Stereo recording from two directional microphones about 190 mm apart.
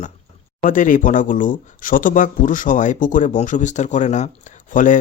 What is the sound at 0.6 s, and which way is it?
Speech, 45° left (ahead or behind).